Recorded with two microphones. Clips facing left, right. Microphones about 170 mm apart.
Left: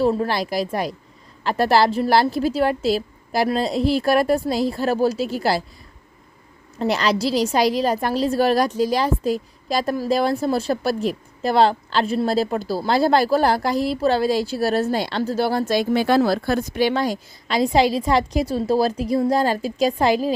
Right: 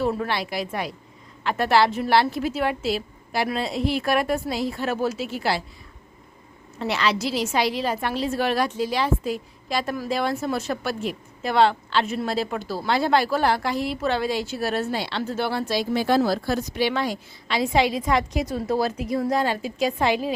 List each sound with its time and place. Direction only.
0.0 s a woman's voice: 30° left (ahead or behind)
6.7 s a woman's voice: 40° left (ahead or behind)